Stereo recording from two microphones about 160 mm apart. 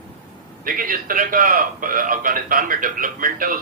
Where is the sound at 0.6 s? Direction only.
60° right (ahead or behind).